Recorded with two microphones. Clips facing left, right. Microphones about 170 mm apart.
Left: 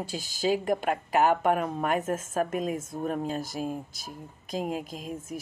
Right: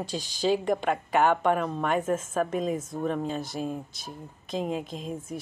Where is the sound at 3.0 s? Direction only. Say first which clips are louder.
Right 1 dB; 5° left (ahead or behind).